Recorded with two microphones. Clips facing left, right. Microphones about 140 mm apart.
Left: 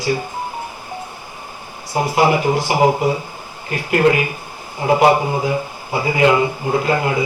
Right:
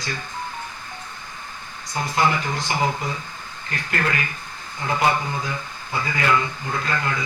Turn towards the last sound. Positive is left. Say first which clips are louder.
# left 9 dB
turn(degrees=15)  # may be behind; listen again after turning